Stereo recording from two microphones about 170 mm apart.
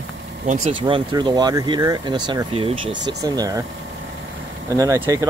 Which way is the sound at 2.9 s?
90° right.